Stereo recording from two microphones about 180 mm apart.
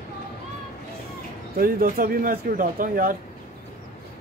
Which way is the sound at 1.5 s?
55° right (ahead or behind).